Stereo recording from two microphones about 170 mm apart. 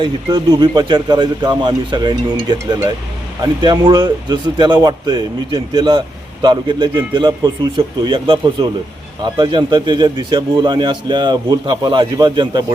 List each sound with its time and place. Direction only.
0.0 s a man's voice: 25° right (ahead or behind)